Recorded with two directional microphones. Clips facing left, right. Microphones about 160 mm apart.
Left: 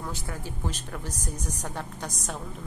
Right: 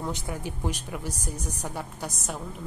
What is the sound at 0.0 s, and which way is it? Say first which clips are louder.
A woman's voice: right 4 dB; 20° right (ahead or behind).